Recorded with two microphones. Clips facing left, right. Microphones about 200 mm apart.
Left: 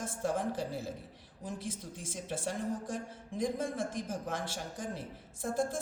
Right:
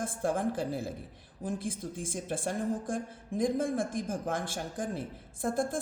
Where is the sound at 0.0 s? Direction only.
55° right (ahead or behind).